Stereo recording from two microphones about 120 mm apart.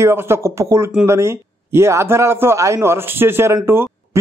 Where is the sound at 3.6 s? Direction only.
20° right (ahead or behind).